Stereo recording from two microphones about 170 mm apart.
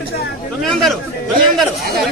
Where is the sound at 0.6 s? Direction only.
Centre (ahead or behind).